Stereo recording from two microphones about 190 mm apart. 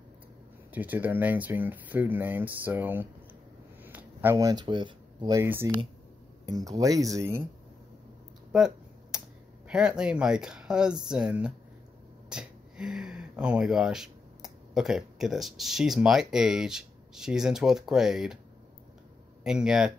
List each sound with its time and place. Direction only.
0.7 s speech: 10° right (ahead or behind)
8.5 s a sound: 5° right (ahead or behind)
9.7 s speech: 5° right (ahead or behind)
19.4 s speech: 5° right (ahead or behind)